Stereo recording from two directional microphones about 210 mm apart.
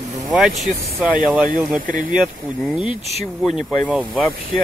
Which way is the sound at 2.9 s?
30° left (ahead or behind).